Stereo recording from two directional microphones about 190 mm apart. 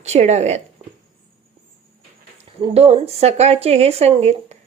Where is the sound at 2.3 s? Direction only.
30° right (ahead or behind).